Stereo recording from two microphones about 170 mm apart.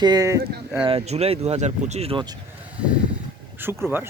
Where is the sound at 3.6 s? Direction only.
10° right (ahead or behind).